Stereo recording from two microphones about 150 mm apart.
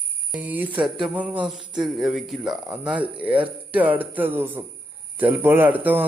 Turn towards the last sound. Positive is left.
turn(degrees=-10)  # may be behind; listen again after turning